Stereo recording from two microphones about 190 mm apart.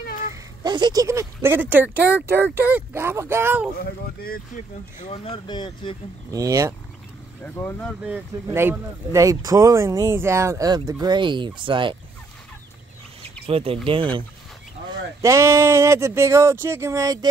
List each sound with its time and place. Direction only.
0.3 s speech: 25° right (ahead or behind)
5.1 s speech: 30° left (ahead or behind)
6.3 s speech: 20° right (ahead or behind)
7.4 s speech: 10° left (ahead or behind)
8.5 s speech: 15° right (ahead or behind)
13.5 s speech: 30° right (ahead or behind)
15.2 s speech: 15° right (ahead or behind)